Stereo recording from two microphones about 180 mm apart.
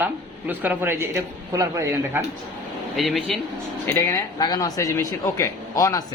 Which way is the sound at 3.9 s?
15° left (ahead or behind).